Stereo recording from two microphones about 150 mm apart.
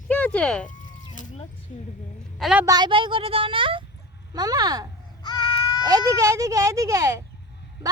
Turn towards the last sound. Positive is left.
turn(degrees=-20)  # may be behind; listen again after turning